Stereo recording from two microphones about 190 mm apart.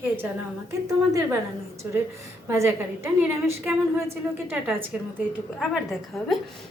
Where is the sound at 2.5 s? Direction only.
15° right (ahead or behind).